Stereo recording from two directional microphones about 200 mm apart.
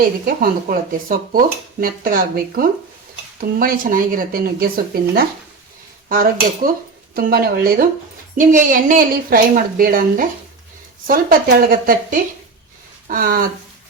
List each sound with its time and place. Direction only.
0.0 s a woman's voice: 45° right (ahead or behind)